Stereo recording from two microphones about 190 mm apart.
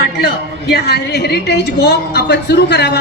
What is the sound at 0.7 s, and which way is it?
A woman's voice, 60° left (ahead or behind).